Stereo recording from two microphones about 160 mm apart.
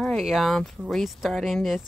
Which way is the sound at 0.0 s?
Centre (ahead or behind).